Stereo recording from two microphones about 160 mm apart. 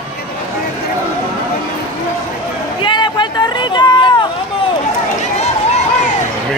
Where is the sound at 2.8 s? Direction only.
30° left (ahead or behind).